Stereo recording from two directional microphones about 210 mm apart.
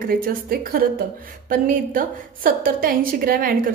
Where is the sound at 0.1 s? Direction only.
45° right (ahead or behind).